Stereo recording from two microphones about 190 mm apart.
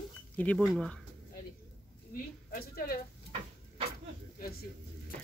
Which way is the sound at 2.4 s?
50° left (ahead or behind).